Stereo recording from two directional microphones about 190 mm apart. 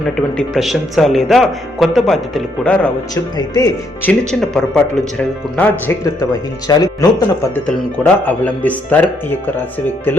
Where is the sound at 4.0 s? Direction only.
5° left (ahead or behind); by 7.1 s 20° left (ahead or behind).